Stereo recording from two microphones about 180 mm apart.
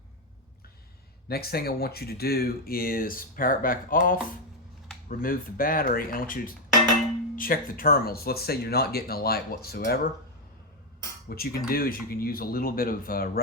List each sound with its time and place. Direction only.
1.3 s speech: 60° left (ahead or behind)
11.3 s speech: 55° left (ahead or behind)